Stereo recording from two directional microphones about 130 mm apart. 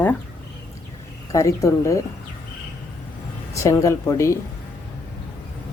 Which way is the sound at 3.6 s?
25° left (ahead or behind).